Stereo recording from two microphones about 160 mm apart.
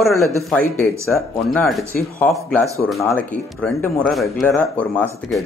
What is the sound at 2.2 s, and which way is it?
Speech, 10° left (ahead or behind).